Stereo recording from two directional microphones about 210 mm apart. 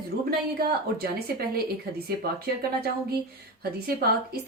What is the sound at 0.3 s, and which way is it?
Speech, 45° right (ahead or behind).